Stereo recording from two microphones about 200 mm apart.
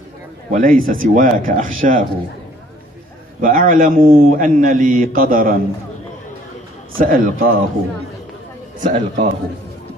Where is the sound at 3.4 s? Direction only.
45° right (ahead or behind).